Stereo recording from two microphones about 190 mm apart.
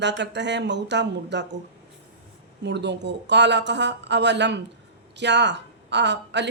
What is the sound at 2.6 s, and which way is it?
A woman's voice, 65° right (ahead or behind).